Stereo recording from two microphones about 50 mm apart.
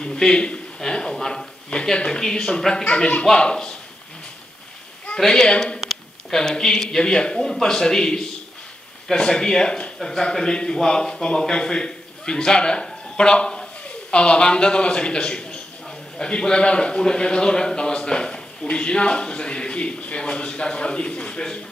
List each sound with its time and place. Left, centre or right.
0.0 s speech: centre
5.1 s a man's voice: centre